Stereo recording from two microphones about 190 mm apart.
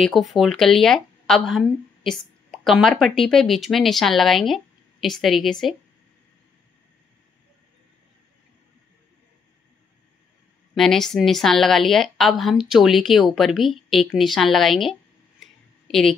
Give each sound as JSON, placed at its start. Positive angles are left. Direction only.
{"t": 0.0, "sound": "a woman's voice", "side_deg": 0}
{"t": 10.7, "sound": "a woman's voice", "side_deg": 0}
{"t": 15.4, "sound": "a sound", "side_deg": 0}